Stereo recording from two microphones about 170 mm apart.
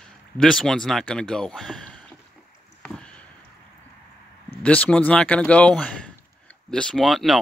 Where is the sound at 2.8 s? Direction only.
5° left (ahead or behind).